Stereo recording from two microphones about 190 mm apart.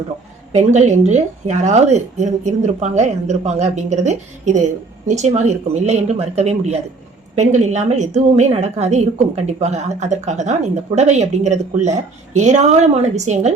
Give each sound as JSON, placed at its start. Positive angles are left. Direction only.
{"t": 0.5, "sound": "a woman's voice", "side_deg": -35}